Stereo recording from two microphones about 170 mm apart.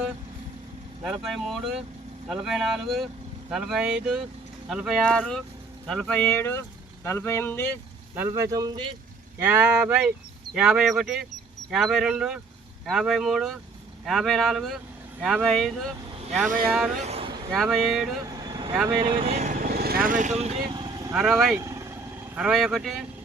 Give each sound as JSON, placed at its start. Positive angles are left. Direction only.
{"t": 1.2, "sound": "speech", "side_deg": 0}
{"t": 8.1, "sound": "a man's voice", "side_deg": -15}
{"t": 9.5, "sound": "speech", "side_deg": -10}
{"t": 16.5, "sound": "speech", "side_deg": -60}
{"t": 17.0, "sound": "vehicle", "side_deg": -35}
{"t": 17.5, "sound": "speech", "side_deg": 0}
{"t": 19.1, "sound": "speech", "side_deg": -40}
{"t": 20.7, "sound": "vehicle", "side_deg": -25}
{"t": 21.2, "sound": "speech", "side_deg": 0}
{"t": 21.6, "sound": "vehicle", "side_deg": -15}
{"t": 22.4, "sound": "speech", "side_deg": -5}